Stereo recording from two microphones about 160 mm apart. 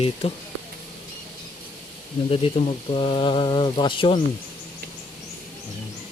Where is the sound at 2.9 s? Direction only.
35° left (ahead or behind).